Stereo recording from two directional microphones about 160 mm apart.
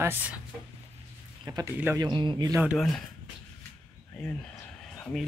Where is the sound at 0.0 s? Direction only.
10° right (ahead or behind).